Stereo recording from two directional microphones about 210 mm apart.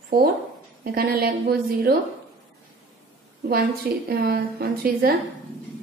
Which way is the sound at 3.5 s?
45° right (ahead or behind).